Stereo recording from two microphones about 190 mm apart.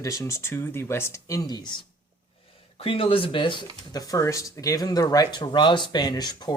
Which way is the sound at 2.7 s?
30° left (ahead or behind).